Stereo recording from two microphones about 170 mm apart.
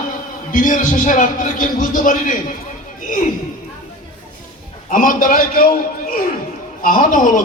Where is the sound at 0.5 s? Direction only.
50° left (ahead or behind).